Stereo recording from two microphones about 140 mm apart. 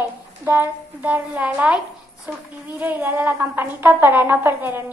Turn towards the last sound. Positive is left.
turn(degrees=-15)  # may be behind; listen again after turning